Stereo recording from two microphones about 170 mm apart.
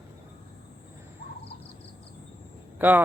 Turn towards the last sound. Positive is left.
turn(degrees=-10)  # may be behind; listen again after turning